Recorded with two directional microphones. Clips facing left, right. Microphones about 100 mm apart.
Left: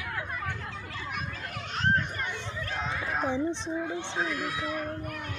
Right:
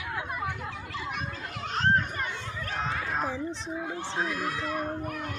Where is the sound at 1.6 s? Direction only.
35° right (ahead or behind).